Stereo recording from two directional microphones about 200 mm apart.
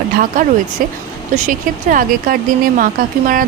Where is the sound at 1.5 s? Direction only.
40° right (ahead or behind).